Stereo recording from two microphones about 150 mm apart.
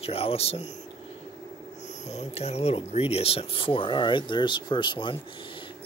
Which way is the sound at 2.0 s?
45° left (ahead or behind).